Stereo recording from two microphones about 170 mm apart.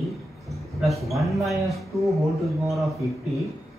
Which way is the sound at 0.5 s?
Centre (ahead or behind).